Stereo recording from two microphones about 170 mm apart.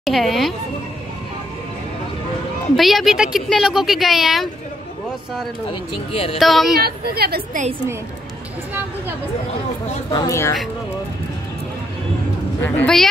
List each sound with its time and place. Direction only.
0.0 s a woman's voice: centre (ahead or behind)
2.7 s a woman's voice: centre (ahead or behind)
5.7 s speech: 35° left (ahead or behind)
6.3 s a woman's voice: centre (ahead or behind)
6.8 s a woman's voice: 65° right (ahead or behind)
10.1 s speech: 20° left (ahead or behind)
12.6 s a woman's voice: 5° left (ahead or behind)